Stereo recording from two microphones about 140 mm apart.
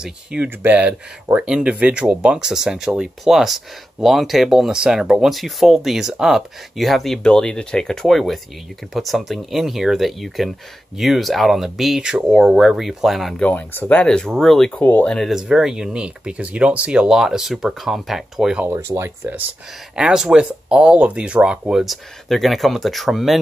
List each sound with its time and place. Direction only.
0.0 s speech: 10° right (ahead or behind); by 15.1 s 15° left (ahead or behind)
15.1 s speech: centre (ahead or behind)
18.7 s speech: 20° right (ahead or behind)
20.0 s speech: 5° right (ahead or behind)